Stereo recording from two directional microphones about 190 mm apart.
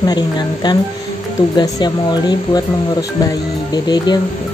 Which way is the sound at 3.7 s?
20° left (ahead or behind).